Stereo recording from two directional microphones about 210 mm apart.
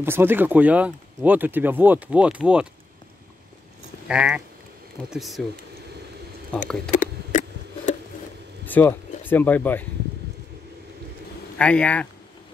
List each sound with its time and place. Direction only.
0.0 s speech: 10° right (ahead or behind)
4.1 s speech: 5° right (ahead or behind)
6.9 s a sound: 35° left (ahead or behind)
8.6 s speech: 10° left (ahead or behind)
11.5 s speech: 5° left (ahead or behind)